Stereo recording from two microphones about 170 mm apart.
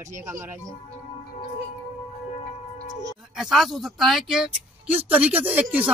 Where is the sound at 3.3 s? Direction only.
Centre (ahead or behind).